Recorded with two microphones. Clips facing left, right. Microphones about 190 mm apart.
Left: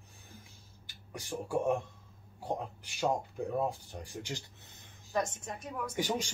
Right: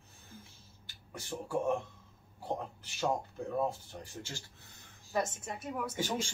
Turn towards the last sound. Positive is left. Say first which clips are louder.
# left 2 dB
turn(degrees=15)  # may be behind; listen again after turning